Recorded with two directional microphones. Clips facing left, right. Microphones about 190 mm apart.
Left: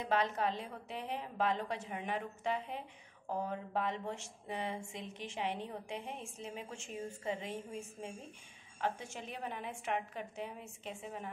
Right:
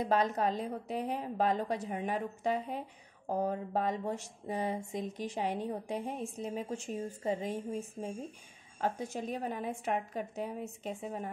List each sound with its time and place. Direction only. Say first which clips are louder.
0.0 s speech: right 4 dB; 40° right (ahead or behind)